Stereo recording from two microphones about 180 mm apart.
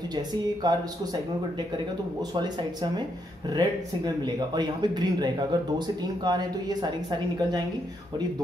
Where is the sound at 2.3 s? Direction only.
25° right (ahead or behind).